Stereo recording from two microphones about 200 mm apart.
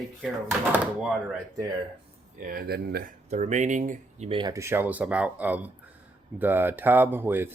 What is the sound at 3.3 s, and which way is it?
Speech, 35° right (ahead or behind).